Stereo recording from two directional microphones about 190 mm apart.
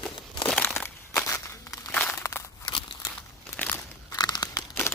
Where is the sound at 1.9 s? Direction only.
5° left (ahead or behind).